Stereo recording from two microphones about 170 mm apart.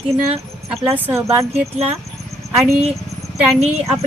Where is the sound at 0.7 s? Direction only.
10° right (ahead or behind).